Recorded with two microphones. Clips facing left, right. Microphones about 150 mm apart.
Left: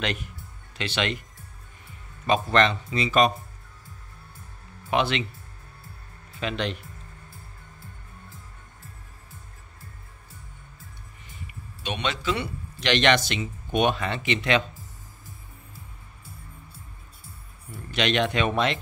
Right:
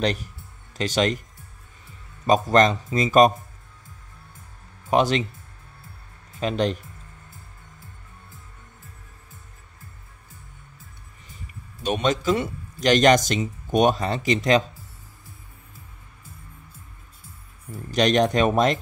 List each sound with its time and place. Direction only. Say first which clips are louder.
0.0 s speech: right 6 dB; 35° right (ahead or behind)
2.2 s speech: right 4 dB; 40° right (ahead or behind)
4.8 s speech: right 4 dB; 40° right (ahead or behind)
6.4 s speech: right 6 dB; 40° right (ahead or behind)
11.8 s speech: right 7 dB; 40° right (ahead or behind)
17.6 s speech: right 5 dB; 40° right (ahead or behind)